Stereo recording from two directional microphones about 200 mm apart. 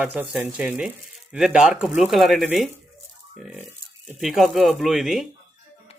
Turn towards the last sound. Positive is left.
turn(degrees=0)  # may be behind; listen again after turning